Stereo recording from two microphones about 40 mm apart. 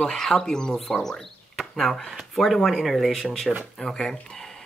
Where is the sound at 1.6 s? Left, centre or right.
Centre.